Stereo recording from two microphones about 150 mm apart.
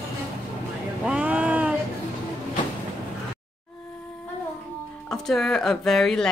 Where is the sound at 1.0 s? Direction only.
10° right (ahead or behind).